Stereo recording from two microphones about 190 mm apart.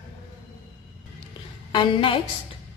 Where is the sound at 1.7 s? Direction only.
25° left (ahead or behind).